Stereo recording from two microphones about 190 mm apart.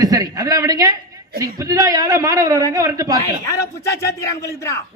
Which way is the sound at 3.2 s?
15° left (ahead or behind).